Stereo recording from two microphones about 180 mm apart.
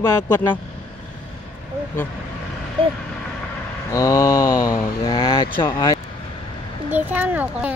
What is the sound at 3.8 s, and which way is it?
Mantra, 20° left (ahead or behind).